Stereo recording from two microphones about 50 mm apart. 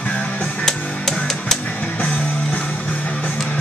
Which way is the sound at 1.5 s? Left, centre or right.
Centre.